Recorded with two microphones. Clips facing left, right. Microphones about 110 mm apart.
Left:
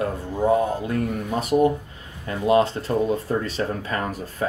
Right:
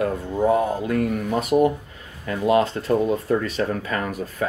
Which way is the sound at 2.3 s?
30° left (ahead or behind).